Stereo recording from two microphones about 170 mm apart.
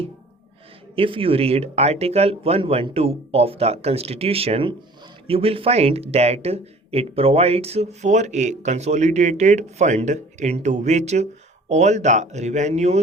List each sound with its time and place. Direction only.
0.9 s speech: 30° right (ahead or behind)